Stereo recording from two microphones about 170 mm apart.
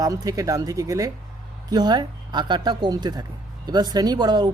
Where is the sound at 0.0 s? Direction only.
20° right (ahead or behind).